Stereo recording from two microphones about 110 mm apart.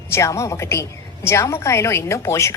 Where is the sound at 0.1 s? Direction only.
25° left (ahead or behind).